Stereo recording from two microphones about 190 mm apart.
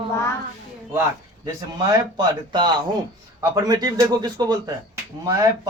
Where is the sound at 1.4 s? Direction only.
20° right (ahead or behind).